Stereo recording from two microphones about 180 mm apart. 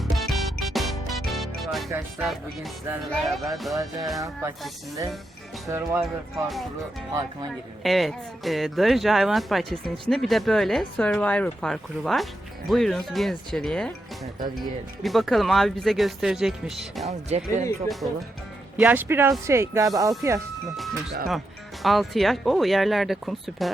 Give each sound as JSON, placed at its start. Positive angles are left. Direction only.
{"t": 0.0, "sound": "music", "side_deg": 0}
{"t": 1.9, "sound": "speech", "side_deg": -10}
{"t": 3.1, "sound": "speech", "side_deg": 0}
{"t": 5.6, "sound": "speech", "side_deg": -15}
{"t": 7.8, "sound": "speech", "side_deg": 0}
{"t": 15.0, "sound": "speech", "side_deg": 0}
{"t": 17.1, "sound": "speech", "side_deg": -40}
{"t": 18.8, "sound": "speech", "side_deg": -10}
{"t": 20.7, "sound": "speech", "side_deg": 0}